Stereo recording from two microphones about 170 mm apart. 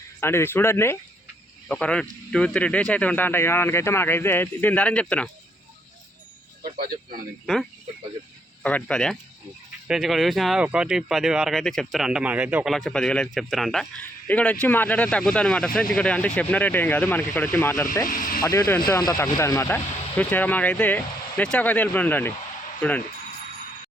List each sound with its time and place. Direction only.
0.2 s speech: 15° left (ahead or behind)
6.6 s speech: 60° right (ahead or behind)
7.4 s speech: centre (ahead or behind)
12.7 s speech: 5° left (ahead or behind)